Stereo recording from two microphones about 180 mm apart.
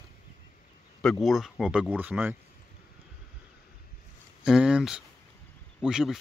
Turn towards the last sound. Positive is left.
turn(degrees=-5)  # may be behind; listen again after turning